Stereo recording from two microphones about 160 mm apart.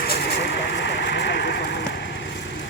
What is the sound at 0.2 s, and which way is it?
Vehicle, 90° left.